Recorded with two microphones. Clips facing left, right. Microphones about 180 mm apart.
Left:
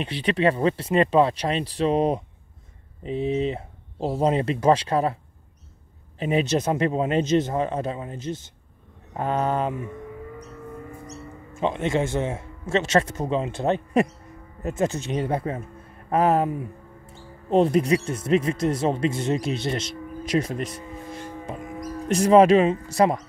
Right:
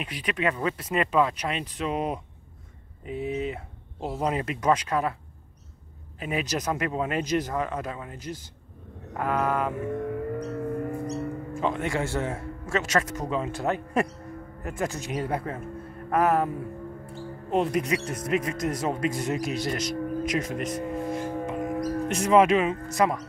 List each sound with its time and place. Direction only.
0.0 s speech: 30° left (ahead or behind)
6.1 s speech: 30° left (ahead or behind)
9.9 s a sound: 60° right (ahead or behind)
11.5 s speech: 20° left (ahead or behind)
20.8 s music: 60° right (ahead or behind)
21.5 s livestock: 60° right (ahead or behind)
22.0 s speech: 35° left (ahead or behind)